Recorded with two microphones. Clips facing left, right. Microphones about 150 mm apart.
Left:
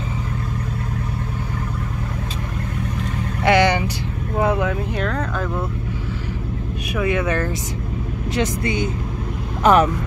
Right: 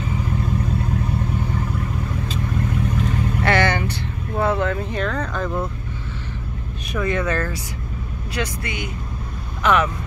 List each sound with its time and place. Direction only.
3.4 s vehicle: 15° left (ahead or behind)
4.4 s a sound: 10° left (ahead or behind)
6.9 s speech: 10° left (ahead or behind); by 8.9 s 25° left (ahead or behind)
9.6 s speech: 35° left (ahead or behind)